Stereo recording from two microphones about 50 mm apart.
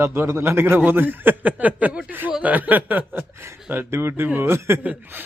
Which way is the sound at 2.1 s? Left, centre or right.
Right.